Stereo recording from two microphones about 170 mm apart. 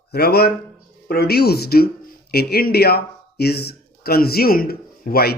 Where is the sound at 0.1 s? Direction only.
70° left (ahead or behind).